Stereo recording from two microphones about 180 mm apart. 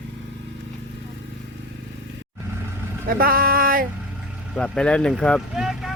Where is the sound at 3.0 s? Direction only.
55° right (ahead or behind).